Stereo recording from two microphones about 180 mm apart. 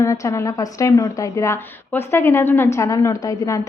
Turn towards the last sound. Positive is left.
turn(degrees=20)  # may be behind; listen again after turning